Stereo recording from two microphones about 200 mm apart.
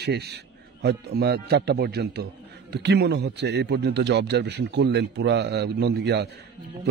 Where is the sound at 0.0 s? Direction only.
55° right (ahead or behind).